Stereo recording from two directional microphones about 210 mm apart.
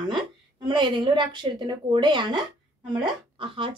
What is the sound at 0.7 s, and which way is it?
A woman's voice, 20° right (ahead or behind).